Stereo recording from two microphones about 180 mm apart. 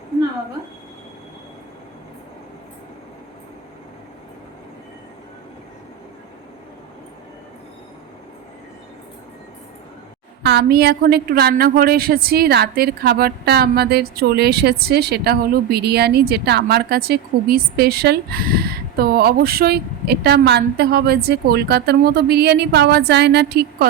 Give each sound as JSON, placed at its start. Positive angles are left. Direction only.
{"t": 10.4, "sound": "a woman's voice", "side_deg": -65}